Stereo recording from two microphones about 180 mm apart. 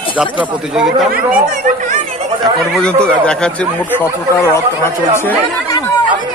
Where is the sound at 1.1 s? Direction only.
50° right (ahead or behind).